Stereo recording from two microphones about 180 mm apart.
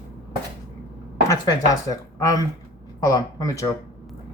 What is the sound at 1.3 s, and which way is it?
Speech, 20° left (ahead or behind).